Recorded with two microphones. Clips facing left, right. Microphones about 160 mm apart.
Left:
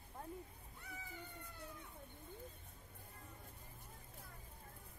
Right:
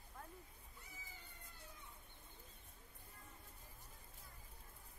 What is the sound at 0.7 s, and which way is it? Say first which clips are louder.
Cat: left 9 dB; 65° left (ahead or behind).